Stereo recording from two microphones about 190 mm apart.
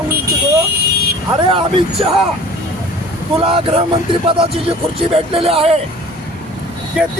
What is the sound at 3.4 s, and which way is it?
Speech, 30° right (ahead or behind).